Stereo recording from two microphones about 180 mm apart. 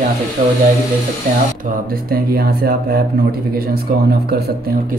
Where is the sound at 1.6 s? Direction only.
55° right (ahead or behind).